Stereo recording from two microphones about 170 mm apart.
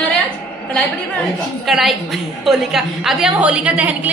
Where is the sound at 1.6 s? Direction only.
Centre (ahead or behind).